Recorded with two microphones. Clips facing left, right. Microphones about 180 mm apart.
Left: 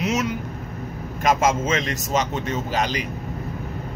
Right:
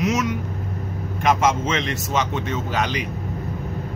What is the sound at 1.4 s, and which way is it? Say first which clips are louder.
Speech: even; 45° left (ahead or behind).